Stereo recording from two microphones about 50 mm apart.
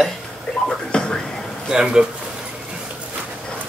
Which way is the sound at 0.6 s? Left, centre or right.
Centre.